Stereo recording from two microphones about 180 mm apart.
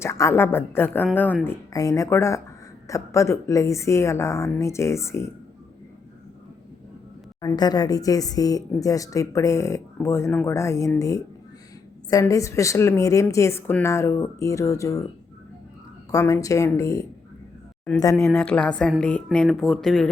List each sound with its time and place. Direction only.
0.0 s speech: 15° left (ahead or behind)
7.4 s speech: 20° left (ahead or behind)
16.1 s speech: 20° left (ahead or behind)
18.3 s speech: 5° left (ahead or behind)